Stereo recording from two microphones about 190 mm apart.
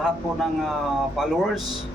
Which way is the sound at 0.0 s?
Centre (ahead or behind).